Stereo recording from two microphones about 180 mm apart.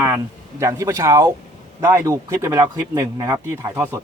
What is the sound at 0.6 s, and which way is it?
Speech, 15° right (ahead or behind).